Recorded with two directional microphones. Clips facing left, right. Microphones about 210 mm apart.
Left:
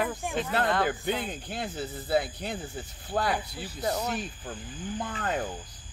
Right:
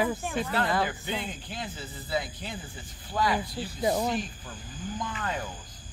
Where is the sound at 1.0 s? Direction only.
55° left (ahead or behind).